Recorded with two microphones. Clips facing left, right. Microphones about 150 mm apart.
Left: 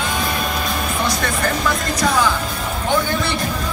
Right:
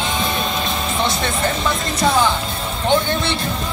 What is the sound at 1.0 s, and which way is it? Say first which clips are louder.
Speech: right 1 dB; 25° right (ahead or behind).